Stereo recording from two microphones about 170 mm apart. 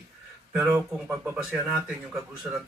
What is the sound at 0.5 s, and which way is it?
A man's voice, 15° right (ahead or behind).